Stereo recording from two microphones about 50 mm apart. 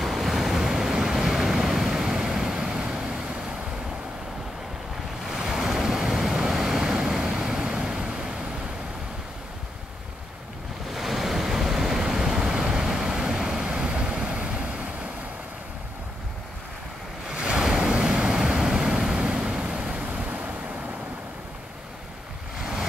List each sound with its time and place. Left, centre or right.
0.0 s waves: centre
5.2 s waves: centre
10.9 s waves: centre; by 14.9 s right
17.3 s waves: centre
20.2 s vehicle: right
22.6 s vehicle: centre